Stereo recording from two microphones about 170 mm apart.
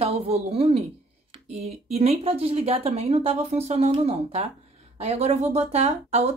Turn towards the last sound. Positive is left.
turn(degrees=-40)  # may be behind; listen again after turning